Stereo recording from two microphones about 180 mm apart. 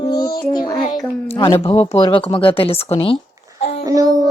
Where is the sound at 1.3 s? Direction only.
30° left (ahead or behind).